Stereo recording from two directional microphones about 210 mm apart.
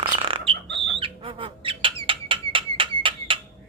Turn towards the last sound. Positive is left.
turn(degrees=-25)  # may be behind; listen again after turning